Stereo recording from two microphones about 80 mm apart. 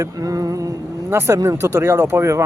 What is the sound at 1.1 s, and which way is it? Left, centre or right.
Speech, right.